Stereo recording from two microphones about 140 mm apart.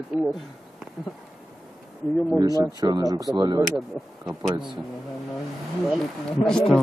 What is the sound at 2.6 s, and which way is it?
Speech, 30° right (ahead or behind).